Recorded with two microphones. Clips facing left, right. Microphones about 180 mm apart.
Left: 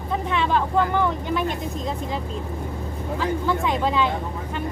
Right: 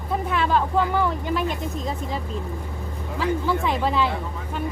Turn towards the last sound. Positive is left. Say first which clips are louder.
# left 1 dB
turn(degrees=-5)  # may be behind; listen again after turning